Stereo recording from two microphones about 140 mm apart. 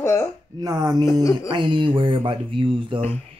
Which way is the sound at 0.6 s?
25° right (ahead or behind).